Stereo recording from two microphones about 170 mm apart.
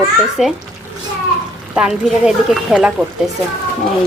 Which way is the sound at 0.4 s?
Centre (ahead or behind).